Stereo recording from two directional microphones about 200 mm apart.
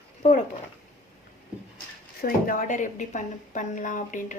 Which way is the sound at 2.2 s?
40° left (ahead or behind).